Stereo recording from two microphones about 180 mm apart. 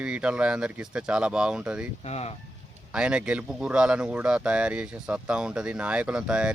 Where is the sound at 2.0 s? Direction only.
35° left (ahead or behind).